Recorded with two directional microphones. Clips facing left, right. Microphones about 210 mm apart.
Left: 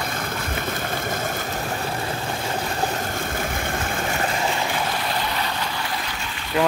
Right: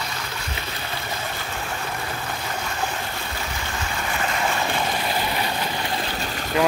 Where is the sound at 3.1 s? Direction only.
50° left (ahead or behind).